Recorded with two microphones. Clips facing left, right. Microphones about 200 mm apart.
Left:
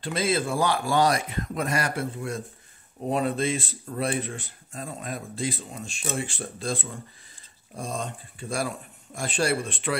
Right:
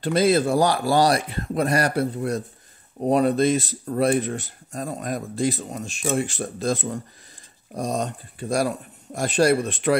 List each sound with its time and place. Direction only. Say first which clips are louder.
0.0 s speech: right 7 dB; 40° right (ahead or behind)